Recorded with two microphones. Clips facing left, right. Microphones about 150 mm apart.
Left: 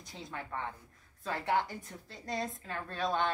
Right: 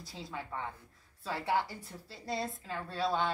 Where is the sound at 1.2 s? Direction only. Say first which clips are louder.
Left 1 dB; 5° right (ahead or behind).